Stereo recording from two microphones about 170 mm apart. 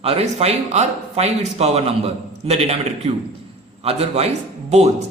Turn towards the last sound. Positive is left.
turn(degrees=-40)  # may be behind; listen again after turning